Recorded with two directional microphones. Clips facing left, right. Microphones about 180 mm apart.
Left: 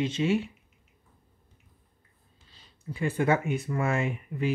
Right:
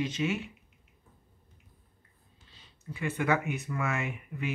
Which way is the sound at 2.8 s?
30° left (ahead or behind).